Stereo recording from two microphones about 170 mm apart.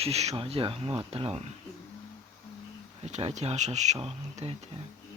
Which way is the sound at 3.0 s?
35° right (ahead or behind).